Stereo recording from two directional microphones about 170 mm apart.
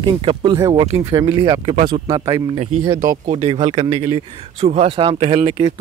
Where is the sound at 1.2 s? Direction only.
30° right (ahead or behind).